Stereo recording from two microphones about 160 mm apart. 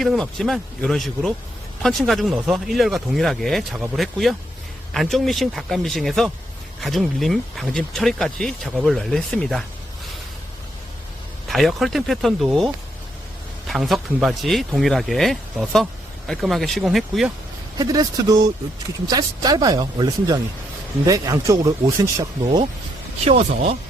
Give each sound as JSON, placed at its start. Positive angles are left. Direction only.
{"t": 0.0, "sound": "speech", "side_deg": 0}
{"t": 11.4, "sound": "speech", "side_deg": 0}
{"t": 17.7, "sound": "speech", "side_deg": -25}
{"t": 23.2, "sound": "speech", "side_deg": -40}